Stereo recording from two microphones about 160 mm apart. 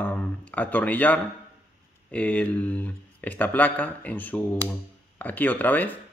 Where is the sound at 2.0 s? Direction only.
10° left (ahead or behind).